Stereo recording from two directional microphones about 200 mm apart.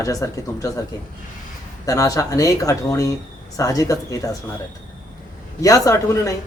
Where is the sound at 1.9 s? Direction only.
15° left (ahead or behind).